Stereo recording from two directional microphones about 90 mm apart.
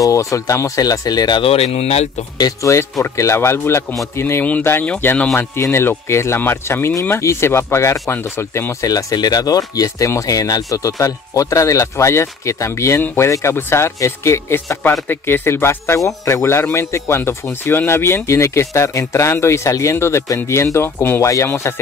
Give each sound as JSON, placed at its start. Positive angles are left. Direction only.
{"t": 0.0, "sound": "speech", "side_deg": 40}
{"t": 1.4, "sound": "speech", "side_deg": 90}
{"t": 2.3, "sound": "speech", "side_deg": 45}
{"t": 2.7, "sound": "speech", "side_deg": 35}
{"t": 5.3, "sound": "speech", "side_deg": 25}
{"t": 8.8, "sound": "speech", "side_deg": 45}